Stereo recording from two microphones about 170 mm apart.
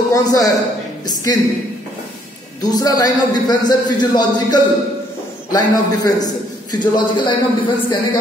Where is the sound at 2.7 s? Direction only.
20° left (ahead or behind).